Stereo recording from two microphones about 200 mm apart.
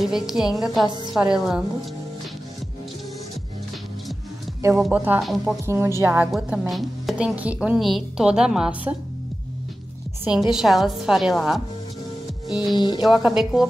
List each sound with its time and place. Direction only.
0.0 s a woman's voice: centre (ahead or behind)
4.6 s a woman's voice: 15° right (ahead or behind)
5.7 s a woman's voice: 15° right (ahead or behind)
10.3 s a woman's voice: centre (ahead or behind)
12.7 s speech: 25° left (ahead or behind)
13.0 s a woman's voice: 5° right (ahead or behind)